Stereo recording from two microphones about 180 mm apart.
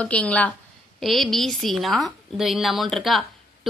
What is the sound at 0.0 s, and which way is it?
A woman's voice, 5° left (ahead or behind).